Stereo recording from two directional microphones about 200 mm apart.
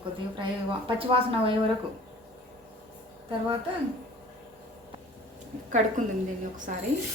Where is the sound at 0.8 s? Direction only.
25° right (ahead or behind).